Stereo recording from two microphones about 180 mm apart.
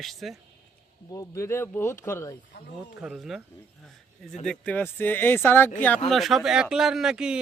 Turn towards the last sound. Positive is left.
turn(degrees=-5)  # may be behind; listen again after turning